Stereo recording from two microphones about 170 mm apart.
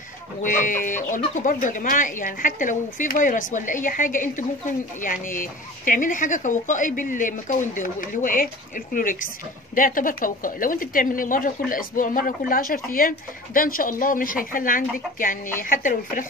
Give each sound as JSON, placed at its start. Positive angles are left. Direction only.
{"t": 0.4, "sound": "speech", "side_deg": 50}